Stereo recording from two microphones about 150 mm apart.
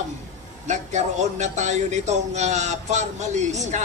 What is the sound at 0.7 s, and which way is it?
Speech, 50° right (ahead or behind).